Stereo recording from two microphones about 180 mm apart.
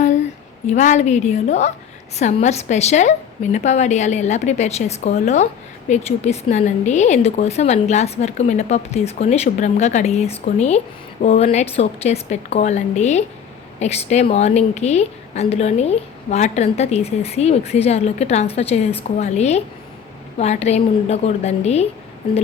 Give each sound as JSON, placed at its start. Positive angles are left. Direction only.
{"t": 0.7, "sound": "speech", "side_deg": 40}